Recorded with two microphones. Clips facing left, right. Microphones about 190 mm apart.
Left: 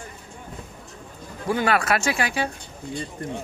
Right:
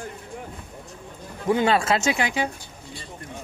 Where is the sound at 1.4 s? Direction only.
20° right (ahead or behind).